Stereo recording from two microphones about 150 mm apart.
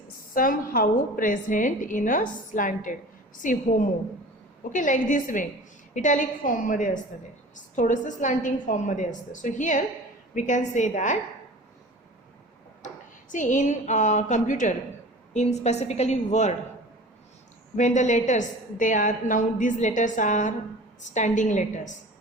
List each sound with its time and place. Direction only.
0.3 s a woman's voice: 70° left (ahead or behind)
13.3 s a woman's voice: 60° left (ahead or behind)
17.7 s a woman's voice: 55° left (ahead or behind)